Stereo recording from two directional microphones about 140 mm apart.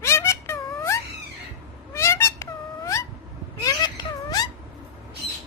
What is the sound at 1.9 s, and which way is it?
Cat, 20° left (ahead or behind).